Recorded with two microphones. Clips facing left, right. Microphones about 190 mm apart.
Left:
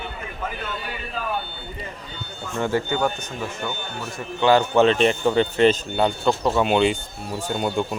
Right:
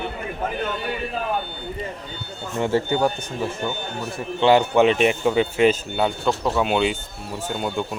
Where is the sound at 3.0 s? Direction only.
15° right (ahead or behind).